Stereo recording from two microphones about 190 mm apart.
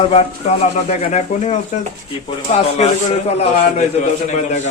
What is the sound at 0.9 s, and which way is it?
A man's voice, 35° left (ahead or behind).